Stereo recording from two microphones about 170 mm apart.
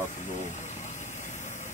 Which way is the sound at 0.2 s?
45° left (ahead or behind).